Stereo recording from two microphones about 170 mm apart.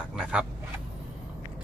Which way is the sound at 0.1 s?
5° right (ahead or behind).